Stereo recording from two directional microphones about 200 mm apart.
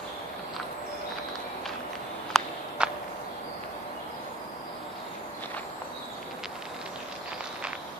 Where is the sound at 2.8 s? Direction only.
5° right (ahead or behind).